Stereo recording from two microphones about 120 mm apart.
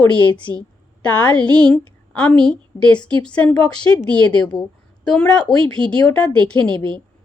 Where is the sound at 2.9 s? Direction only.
35° left (ahead or behind).